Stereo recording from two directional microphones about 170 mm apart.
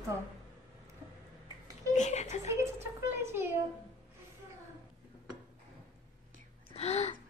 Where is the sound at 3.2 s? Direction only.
15° right (ahead or behind).